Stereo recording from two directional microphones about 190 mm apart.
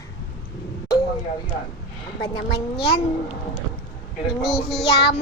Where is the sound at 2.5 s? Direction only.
30° left (ahead or behind).